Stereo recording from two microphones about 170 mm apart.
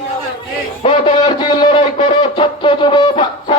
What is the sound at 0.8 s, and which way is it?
Music, 30° left (ahead or behind).